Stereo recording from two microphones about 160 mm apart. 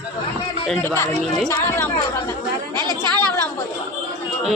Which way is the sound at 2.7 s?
30° right (ahead or behind).